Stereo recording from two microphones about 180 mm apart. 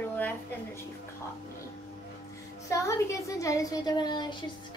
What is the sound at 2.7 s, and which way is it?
Speech, 20° left (ahead or behind).